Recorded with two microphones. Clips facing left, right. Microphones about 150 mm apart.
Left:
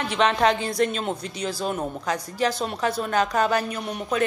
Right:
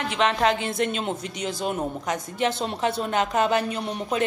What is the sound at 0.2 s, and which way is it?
A woman's voice, 20° right (ahead or behind).